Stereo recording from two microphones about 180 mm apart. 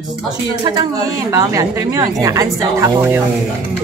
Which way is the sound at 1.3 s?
20° right (ahead or behind).